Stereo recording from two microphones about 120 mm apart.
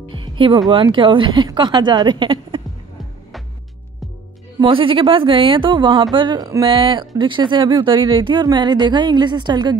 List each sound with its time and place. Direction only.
0.1 s music: 45° right (ahead or behind)
0.7 s speech: 45° right (ahead or behind)
4.6 s speech: 45° right (ahead or behind)